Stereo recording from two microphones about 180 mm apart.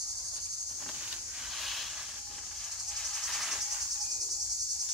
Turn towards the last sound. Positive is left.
turn(degrees=0)  # may be behind; listen again after turning